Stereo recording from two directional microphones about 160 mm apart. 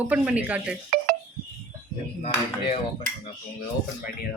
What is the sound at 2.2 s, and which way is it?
Chop, 40° left (ahead or behind).